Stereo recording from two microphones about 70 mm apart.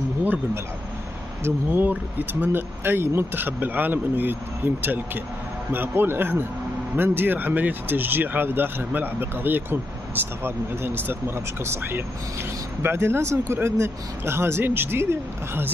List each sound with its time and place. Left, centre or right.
1.4 s speech: right